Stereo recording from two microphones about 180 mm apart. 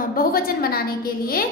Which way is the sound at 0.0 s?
55° left (ahead or behind).